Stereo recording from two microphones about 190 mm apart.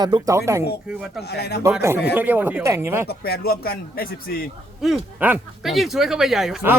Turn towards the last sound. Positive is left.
turn(degrees=-5)  # may be behind; listen again after turning